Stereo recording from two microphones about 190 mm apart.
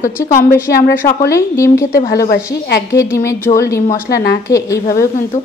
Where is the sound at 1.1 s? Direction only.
15° left (ahead or behind).